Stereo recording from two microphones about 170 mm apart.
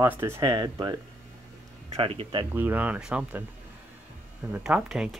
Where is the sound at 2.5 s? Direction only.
10° right (ahead or behind).